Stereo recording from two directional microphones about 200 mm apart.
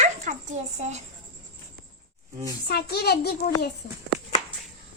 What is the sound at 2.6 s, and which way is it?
Speech, 50° left (ahead or behind).